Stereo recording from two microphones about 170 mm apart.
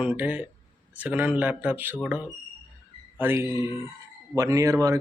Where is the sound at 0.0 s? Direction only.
10° right (ahead or behind).